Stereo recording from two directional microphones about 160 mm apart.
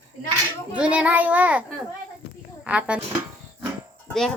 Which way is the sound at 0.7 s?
10° right (ahead or behind).